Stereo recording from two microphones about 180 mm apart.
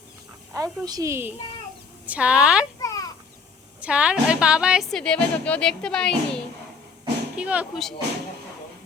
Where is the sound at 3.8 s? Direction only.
5° right (ahead or behind).